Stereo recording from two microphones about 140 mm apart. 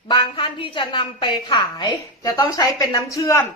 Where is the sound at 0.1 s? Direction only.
35° left (ahead or behind).